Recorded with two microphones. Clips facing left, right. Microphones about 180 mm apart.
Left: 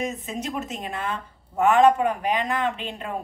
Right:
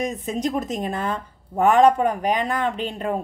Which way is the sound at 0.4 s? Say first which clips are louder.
Right 8 dB; 40° right (ahead or behind).